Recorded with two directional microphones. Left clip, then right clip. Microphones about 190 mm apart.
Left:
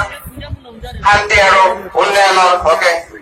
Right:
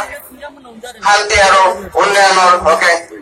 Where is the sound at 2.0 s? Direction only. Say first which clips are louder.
Right 1 dB; 35° right (ahead or behind).